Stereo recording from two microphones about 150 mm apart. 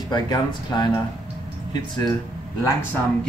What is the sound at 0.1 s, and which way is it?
Speech, 30° left (ahead or behind).